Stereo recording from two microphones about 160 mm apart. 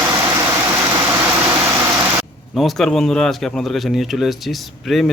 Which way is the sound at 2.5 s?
Centre (ahead or behind).